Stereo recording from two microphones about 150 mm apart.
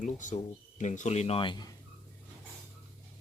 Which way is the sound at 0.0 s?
55° left (ahead or behind).